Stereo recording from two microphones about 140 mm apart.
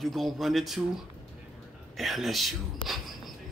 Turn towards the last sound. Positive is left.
turn(degrees=0)  # may be behind; listen again after turning